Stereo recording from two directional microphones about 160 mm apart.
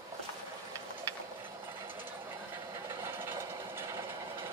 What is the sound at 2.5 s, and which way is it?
Engine, 15° right (ahead or behind).